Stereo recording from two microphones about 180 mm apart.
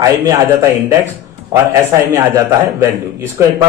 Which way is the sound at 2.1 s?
15° right (ahead or behind).